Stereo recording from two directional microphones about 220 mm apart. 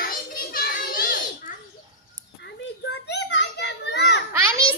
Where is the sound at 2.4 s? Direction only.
50° left (ahead or behind).